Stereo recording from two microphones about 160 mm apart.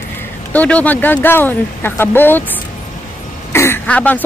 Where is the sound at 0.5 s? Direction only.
10° left (ahead or behind).